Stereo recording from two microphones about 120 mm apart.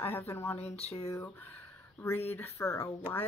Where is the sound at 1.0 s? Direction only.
25° left (ahead or behind).